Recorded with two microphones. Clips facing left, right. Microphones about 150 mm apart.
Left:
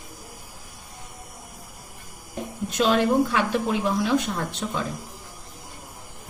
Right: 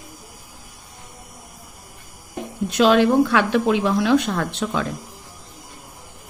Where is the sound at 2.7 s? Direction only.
85° right.